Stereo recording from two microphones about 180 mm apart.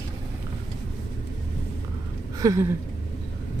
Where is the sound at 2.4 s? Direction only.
15° right (ahead or behind).